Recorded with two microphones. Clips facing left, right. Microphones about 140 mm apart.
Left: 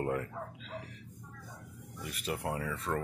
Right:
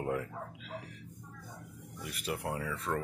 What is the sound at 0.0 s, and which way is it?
Speech, centre (ahead or behind).